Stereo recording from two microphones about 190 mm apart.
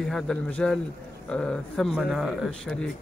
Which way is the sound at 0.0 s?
5° left (ahead or behind).